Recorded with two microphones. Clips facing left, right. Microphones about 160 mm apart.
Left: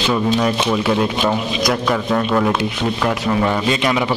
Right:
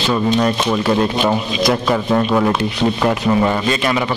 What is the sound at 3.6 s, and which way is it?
Speech, 10° left (ahead or behind).